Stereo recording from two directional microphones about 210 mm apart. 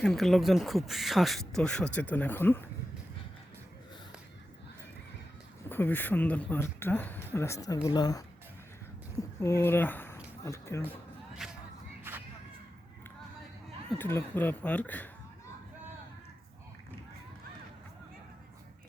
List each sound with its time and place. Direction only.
0.0 s speech: centre (ahead or behind)
5.6 s speech: 10° left (ahead or behind)
9.4 s speech: 10° left (ahead or behind)
11.4 s a sound: centre (ahead or behind)
12.1 s crowd: 10° right (ahead or behind)
14.0 s speech: 10° left (ahead or behind)